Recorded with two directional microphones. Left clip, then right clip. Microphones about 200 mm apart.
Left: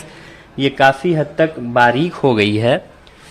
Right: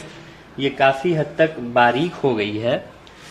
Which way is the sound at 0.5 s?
50° left (ahead or behind).